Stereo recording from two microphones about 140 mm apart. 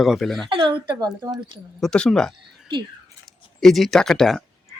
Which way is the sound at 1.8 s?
5° left (ahead or behind).